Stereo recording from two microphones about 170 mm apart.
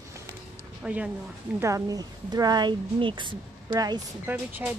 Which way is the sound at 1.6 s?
20° right (ahead or behind).